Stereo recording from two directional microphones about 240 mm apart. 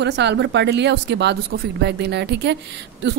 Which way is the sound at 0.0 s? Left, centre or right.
Right.